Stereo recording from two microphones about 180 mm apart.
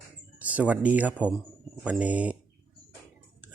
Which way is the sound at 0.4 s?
10° right (ahead or behind).